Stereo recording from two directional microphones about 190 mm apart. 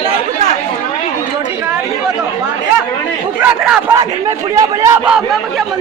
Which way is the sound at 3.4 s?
10° right (ahead or behind).